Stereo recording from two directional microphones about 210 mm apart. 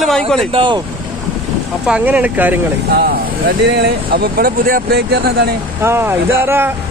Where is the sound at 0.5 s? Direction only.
20° right (ahead or behind).